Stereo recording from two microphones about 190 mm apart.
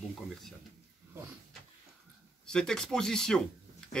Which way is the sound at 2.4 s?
5° left (ahead or behind).